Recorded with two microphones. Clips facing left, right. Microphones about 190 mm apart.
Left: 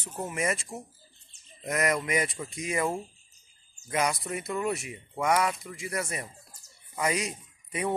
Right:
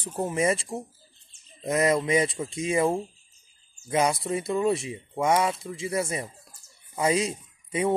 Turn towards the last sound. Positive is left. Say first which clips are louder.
# right 6 dB
turn(degrees=-25)  # may be behind; listen again after turning